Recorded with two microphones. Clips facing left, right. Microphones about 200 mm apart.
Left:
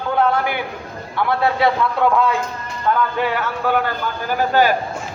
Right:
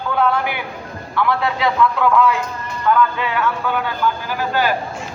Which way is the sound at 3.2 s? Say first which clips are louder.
Even; 50° left (ahead or behind).